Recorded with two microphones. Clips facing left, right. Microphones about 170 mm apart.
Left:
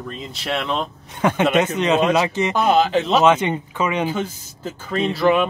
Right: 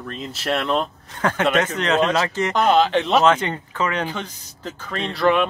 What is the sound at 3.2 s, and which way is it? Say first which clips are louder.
Speech: left 2 dB; 15° left (ahead or behind).